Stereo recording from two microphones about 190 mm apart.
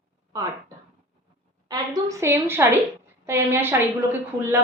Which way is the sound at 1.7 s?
15° right (ahead or behind).